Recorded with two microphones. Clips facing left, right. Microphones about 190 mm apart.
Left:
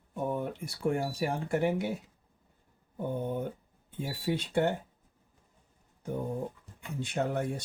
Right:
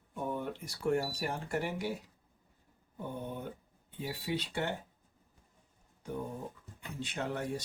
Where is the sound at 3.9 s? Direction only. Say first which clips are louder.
Left 4 dB; 45° left (ahead or behind).